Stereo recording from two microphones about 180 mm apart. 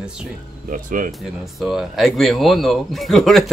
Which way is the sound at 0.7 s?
50° right (ahead or behind).